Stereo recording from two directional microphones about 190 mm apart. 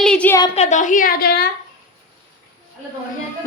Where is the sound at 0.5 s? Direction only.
35° left (ahead or behind); by 1.5 s 55° left (ahead or behind).